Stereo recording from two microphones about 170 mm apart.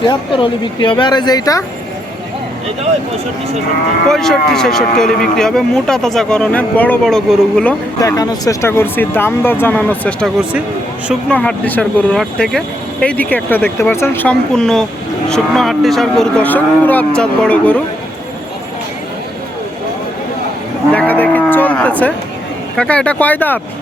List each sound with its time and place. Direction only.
0.0 s speech: 30° left (ahead or behind)
4.1 s speech: centre (ahead or behind)
8.0 s speech: 20° left (ahead or behind)
20.9 s cattle: 10° left (ahead or behind)
22.8 s speech: 5° left (ahead or behind)